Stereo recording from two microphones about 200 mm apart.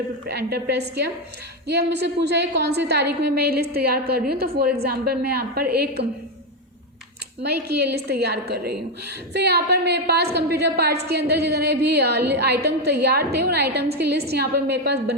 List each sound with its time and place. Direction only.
0.3 s a woman's voice: 55° right (ahead or behind)
7.4 s a woman's voice: 55° right (ahead or behind)